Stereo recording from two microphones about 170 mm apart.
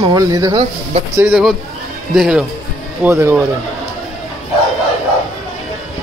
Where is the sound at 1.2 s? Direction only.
Centre (ahead or behind).